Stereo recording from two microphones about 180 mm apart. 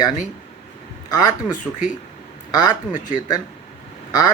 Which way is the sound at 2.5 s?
20° left (ahead or behind).